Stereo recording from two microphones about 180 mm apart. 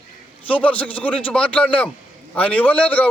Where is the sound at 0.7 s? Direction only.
10° left (ahead or behind).